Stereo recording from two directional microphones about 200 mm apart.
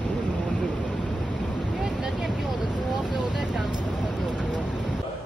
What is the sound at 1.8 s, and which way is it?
Vehicle, 5° right (ahead or behind).